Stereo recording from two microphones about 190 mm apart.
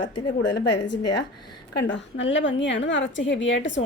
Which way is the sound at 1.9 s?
75° left (ahead or behind).